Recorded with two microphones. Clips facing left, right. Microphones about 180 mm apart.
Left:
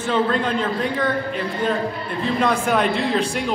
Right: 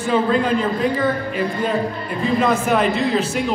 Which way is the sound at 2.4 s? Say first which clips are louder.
Right 1 dB; 5° right (ahead or behind).